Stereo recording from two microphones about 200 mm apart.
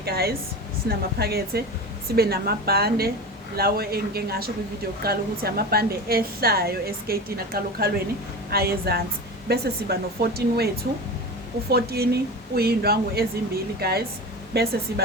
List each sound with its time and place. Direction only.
0.0 s a woman's voice: 50° right (ahead or behind)
11.7 s a woman's voice: 50° right (ahead or behind)